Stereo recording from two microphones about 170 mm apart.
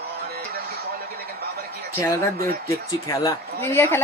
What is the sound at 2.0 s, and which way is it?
A woman's voice, 15° left (ahead or behind).